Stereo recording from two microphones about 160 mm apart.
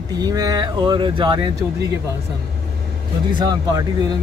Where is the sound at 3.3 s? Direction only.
25° right (ahead or behind).